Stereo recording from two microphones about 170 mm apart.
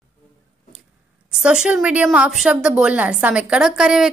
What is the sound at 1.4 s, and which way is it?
A woman's voice, 5° right (ahead or behind).